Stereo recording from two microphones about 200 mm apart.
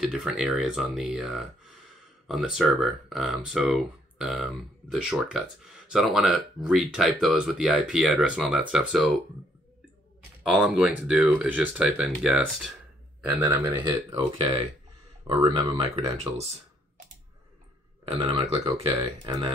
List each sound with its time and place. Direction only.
0.0 s speech: centre (ahead or behind)
10.4 s speech: 5° right (ahead or behind)
13.5 s speech: 20° right (ahead or behind)
15.2 s speech: 25° right (ahead or behind)
18.0 s speech: 30° right (ahead or behind)